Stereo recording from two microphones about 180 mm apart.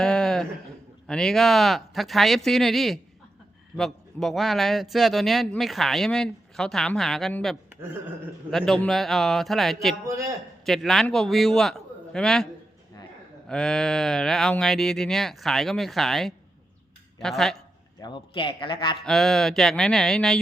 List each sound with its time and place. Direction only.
0.0 s a sound: 5° left (ahead or behind)
1.0 s a man's voice: 5° left (ahead or behind)
13.5 s a man's voice: 5° left (ahead or behind)
18.0 s speech: 25° left (ahead or behind)
19.0 s a man's voice: centre (ahead or behind)